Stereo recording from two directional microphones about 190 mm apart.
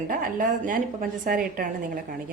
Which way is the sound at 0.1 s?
45° right (ahead or behind).